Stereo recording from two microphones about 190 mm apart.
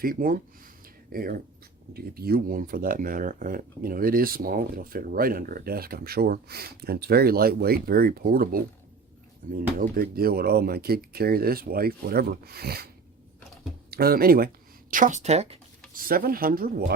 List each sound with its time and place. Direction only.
0.0 s speech: 50° right (ahead or behind)
13.9 s speech: 50° right (ahead or behind); by 15.5 s 35° right (ahead or behind)
16.0 s speech: 50° right (ahead or behind)